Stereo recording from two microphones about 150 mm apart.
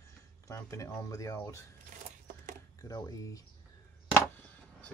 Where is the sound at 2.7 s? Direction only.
25° left (ahead or behind).